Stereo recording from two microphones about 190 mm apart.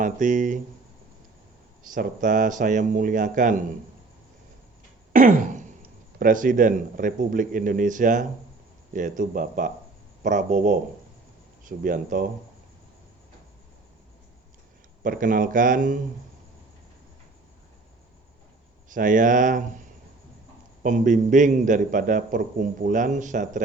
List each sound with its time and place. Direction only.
0.0 s a man's voice: 40° right (ahead or behind)
1.8 s a man's voice: 45° right (ahead or behind)
5.1 s a sound: 45° right (ahead or behind)
6.1 s a man's voice: 45° right (ahead or behind)
15.0 s a man's voice: 45° right (ahead or behind)
18.9 s a man's voice: 45° right (ahead or behind)
20.8 s a man's voice: 40° right (ahead or behind)